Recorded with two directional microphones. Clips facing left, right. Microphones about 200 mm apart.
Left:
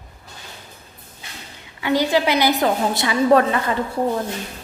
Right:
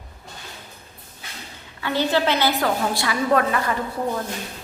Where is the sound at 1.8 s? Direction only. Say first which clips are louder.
Left 3 dB; 15° left (ahead or behind).